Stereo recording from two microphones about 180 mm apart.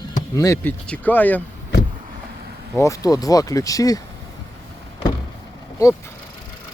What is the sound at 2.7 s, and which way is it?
Speech, 15° left (ahead or behind).